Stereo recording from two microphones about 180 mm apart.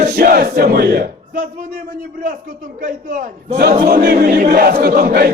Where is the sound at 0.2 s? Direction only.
55° right (ahead or behind).